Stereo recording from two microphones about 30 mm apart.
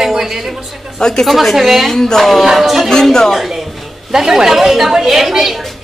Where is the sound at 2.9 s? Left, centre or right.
Centre.